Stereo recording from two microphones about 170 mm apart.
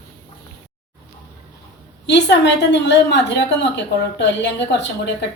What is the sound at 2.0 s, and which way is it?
A woman's voice, 90° left.